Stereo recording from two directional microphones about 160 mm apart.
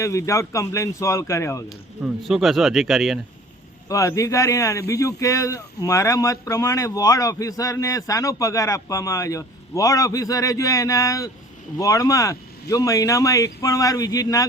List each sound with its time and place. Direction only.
0.0 s speech: 20° left (ahead or behind)
2.2 s speech: centre (ahead or behind)
3.8 s speech: 20° left (ahead or behind)